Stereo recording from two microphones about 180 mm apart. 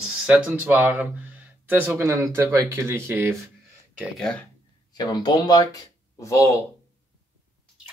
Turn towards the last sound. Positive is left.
turn(degrees=20)  # may be behind; listen again after turning